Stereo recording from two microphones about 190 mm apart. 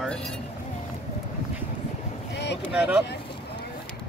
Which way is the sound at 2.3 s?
60° left (ahead or behind).